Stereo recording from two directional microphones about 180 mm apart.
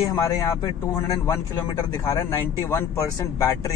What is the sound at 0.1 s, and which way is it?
A man's voice, 20° left (ahead or behind).